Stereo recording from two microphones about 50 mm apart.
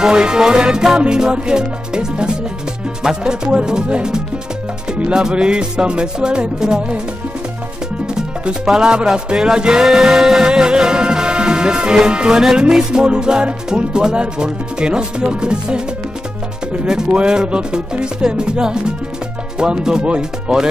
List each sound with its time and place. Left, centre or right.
0.0 s music: centre
8.1 s music: centre
16.8 s music: centre